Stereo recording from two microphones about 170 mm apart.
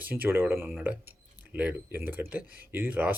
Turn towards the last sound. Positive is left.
turn(degrees=-10)  # may be behind; listen again after turning